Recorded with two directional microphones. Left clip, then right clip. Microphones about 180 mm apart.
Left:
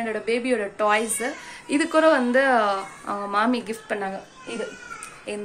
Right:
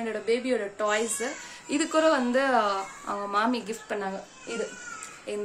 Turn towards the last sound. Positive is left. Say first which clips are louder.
# left 2 dB
turn(degrees=0)  # may be behind; listen again after turning